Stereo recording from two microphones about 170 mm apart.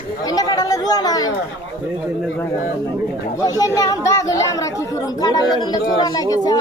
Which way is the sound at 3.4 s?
20° left (ahead or behind).